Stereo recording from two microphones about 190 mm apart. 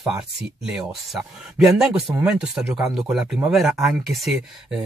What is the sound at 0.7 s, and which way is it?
Speech, 5° right (ahead or behind).